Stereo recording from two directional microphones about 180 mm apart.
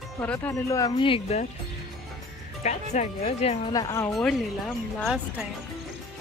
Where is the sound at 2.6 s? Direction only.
40° left (ahead or behind).